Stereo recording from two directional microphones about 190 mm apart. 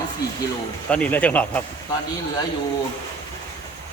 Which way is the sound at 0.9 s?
5° left (ahead or behind).